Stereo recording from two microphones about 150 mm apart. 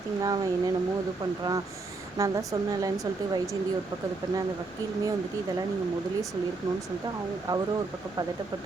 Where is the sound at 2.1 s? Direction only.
20° right (ahead or behind).